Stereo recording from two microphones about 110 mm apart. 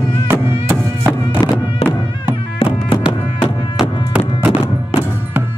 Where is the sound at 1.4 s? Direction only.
20° left (ahead or behind).